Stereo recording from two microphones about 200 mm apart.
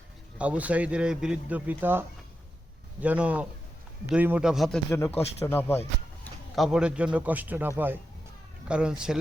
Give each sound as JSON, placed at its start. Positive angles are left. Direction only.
{"t": 0.3, "sound": "a man's voice", "side_deg": -5}
{"t": 5.1, "sound": "speech", "side_deg": 30}
{"t": 5.5, "sound": "speech", "side_deg": 10}
{"t": 6.2, "sound": "a man's voice", "side_deg": 0}